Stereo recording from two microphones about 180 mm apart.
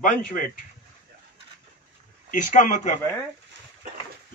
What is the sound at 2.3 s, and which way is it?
Speech, 45° left (ahead or behind).